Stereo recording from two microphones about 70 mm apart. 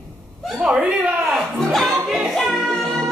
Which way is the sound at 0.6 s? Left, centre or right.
Centre.